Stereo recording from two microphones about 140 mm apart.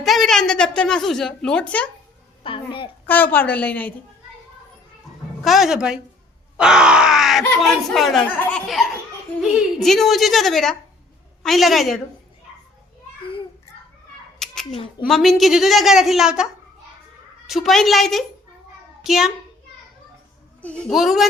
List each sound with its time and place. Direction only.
0.0 s speech: centre (ahead or behind)
2.4 s a woman's voice: 40° left (ahead or behind)
3.1 s a woman's voice: 10° left (ahead or behind)
5.4 s speech: centre (ahead or behind)
14.3 s cat: 5° left (ahead or behind)
15.0 s a child's voice: centre (ahead or behind)
20.6 s a child's voice: 10° left (ahead or behind)
20.9 s speech: centre (ahead or behind)